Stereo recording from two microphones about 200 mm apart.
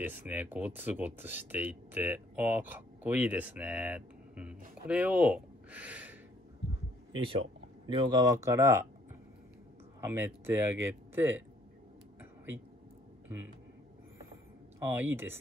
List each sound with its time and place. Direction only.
0.0 s speech: 10° right (ahead or behind)
7.1 s speech: 25° right (ahead or behind)
9.9 s speech: 10° right (ahead or behind)
14.9 s speech: 10° right (ahead or behind)